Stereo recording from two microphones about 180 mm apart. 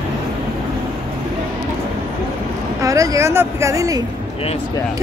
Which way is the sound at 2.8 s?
20° right (ahead or behind).